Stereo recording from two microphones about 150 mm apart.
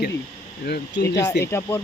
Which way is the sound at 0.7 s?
90° left.